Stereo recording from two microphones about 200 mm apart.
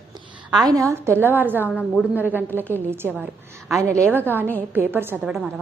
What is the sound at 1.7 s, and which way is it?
Speech, 10° left (ahead or behind).